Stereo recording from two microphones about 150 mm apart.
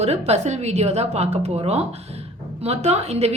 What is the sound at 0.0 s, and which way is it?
A woman's voice, 45° right (ahead or behind).